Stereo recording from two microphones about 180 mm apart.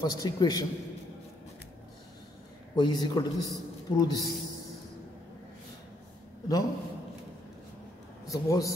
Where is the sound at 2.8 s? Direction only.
20° left (ahead or behind).